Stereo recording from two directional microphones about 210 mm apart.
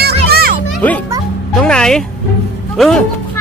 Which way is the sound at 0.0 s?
45° right (ahead or behind).